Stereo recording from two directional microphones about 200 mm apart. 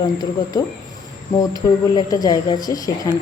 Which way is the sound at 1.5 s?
20° left (ahead or behind).